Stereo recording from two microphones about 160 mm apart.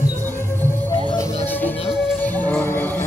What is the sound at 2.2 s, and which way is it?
Music, 10° left (ahead or behind).